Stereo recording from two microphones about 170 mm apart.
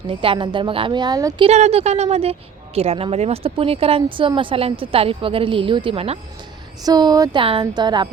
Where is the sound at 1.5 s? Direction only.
40° right (ahead or behind).